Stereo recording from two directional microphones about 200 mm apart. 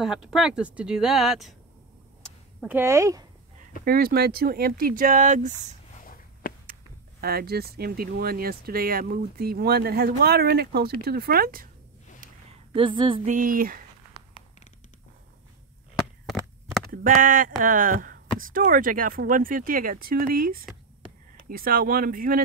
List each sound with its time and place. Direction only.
0.0 s speech: centre (ahead or behind)
2.7 s speech: 15° right (ahead or behind)
3.8 s speech: 50° right (ahead or behind)
5.9 s a sound: 45° left (ahead or behind)
6.7 s speech: 50° right (ahead or behind)
12.7 s speech: 25° right (ahead or behind)
13.3 s speech: 45° right (ahead or behind)
16.9 s speech: 45° right (ahead or behind)